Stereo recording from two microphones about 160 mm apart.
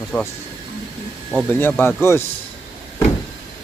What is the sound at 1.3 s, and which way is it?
Speech, 10° left (ahead or behind).